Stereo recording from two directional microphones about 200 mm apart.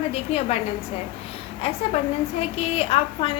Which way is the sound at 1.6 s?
30° left (ahead or behind).